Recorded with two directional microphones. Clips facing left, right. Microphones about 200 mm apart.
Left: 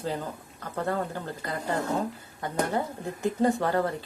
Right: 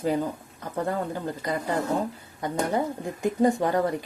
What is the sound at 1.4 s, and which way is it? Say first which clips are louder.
Speech: right 6 dB; 15° right (ahead or behind).